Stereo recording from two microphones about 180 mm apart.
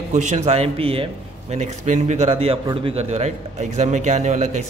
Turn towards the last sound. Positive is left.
turn(degrees=-40)  # may be behind; listen again after turning